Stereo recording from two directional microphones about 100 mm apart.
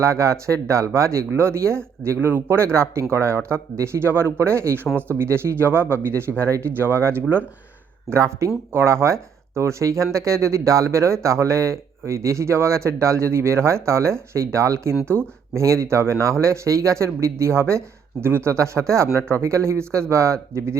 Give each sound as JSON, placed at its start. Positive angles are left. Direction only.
{"t": 0.0, "sound": "speech", "side_deg": -30}
{"t": 8.1, "sound": "speech", "side_deg": -30}